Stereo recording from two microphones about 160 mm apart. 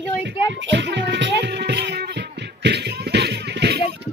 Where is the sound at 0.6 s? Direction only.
90° right.